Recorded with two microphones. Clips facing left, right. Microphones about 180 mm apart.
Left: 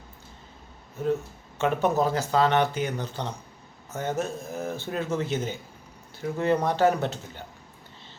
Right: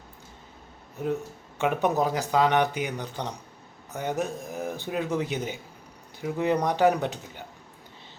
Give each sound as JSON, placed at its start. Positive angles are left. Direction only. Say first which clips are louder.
{"t": 1.5, "sound": "speech", "louder": "left 1 dB", "side_deg": -15}